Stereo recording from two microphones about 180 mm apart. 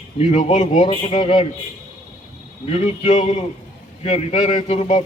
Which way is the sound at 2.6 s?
30° left (ahead or behind).